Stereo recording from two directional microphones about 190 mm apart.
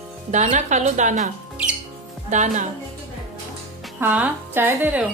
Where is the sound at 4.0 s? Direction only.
10° right (ahead or behind).